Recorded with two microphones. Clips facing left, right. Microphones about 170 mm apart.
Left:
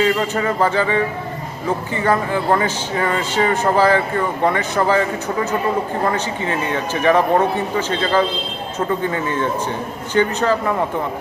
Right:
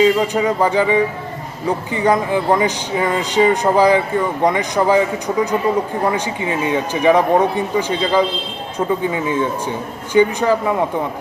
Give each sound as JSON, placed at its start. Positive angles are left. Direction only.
{"t": 0.0, "sound": "speech", "side_deg": -15}